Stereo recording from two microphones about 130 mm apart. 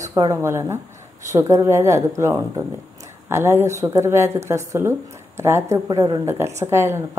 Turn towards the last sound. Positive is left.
turn(degrees=-20)  # may be behind; listen again after turning